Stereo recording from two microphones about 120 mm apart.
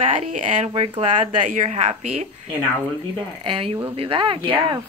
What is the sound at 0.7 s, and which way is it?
Speech, 60° right (ahead or behind).